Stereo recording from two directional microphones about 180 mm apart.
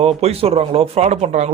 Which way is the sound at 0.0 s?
35° right (ahead or behind).